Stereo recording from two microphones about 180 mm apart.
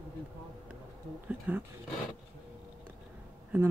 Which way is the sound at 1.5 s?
10° right (ahead or behind).